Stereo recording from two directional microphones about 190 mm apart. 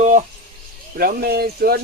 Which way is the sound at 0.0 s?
40° right (ahead or behind).